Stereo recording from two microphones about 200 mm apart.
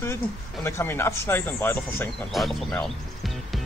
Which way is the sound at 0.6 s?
10° left (ahead or behind).